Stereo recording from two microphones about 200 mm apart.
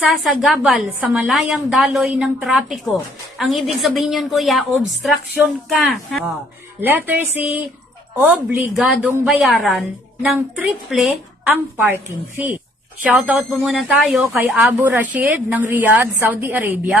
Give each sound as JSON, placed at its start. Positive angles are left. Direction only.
{"t": 0.0, "sound": "a woman's voice", "side_deg": 0}
{"t": 6.8, "sound": "a woman's voice", "side_deg": -10}